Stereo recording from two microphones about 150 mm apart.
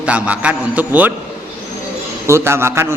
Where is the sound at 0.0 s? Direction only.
10° right (ahead or behind).